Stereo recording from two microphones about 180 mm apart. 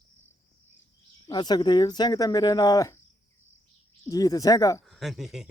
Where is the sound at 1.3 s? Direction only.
20° left (ahead or behind).